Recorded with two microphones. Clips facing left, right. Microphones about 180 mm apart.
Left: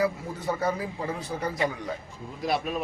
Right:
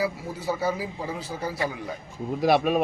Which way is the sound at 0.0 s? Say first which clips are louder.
Left 1 dB; 5° right (ahead or behind).